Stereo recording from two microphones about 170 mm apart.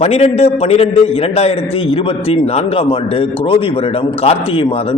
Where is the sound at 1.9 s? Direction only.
35° left (ahead or behind).